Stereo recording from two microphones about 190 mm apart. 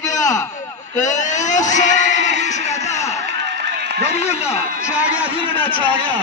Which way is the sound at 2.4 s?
40° left (ahead or behind).